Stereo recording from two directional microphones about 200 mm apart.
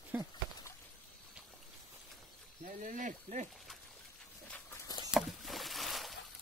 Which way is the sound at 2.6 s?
40° right (ahead or behind).